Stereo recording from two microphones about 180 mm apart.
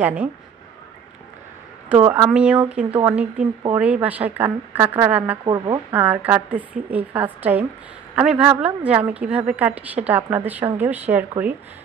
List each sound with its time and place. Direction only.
0.0 s a woman's voice: 10° right (ahead or behind)
2.0 s a woman's voice: 15° right (ahead or behind)
2.3 s a woman's voice: 5° right (ahead or behind)
5.4 s speech: 25° right (ahead or behind)
5.9 s a woman's voice: 10° right (ahead or behind)